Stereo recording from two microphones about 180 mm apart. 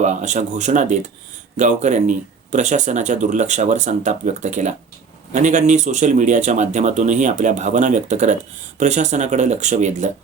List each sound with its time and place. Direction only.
0.0 s speech: 40° right (ahead or behind)